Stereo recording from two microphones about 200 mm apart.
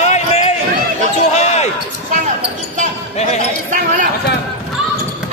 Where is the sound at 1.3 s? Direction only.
35° left (ahead or behind).